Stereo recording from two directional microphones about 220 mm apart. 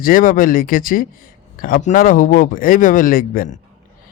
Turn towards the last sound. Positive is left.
turn(degrees=40)  # may be behind; listen again after turning